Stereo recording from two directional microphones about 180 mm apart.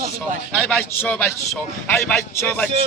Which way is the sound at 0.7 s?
10° left (ahead or behind).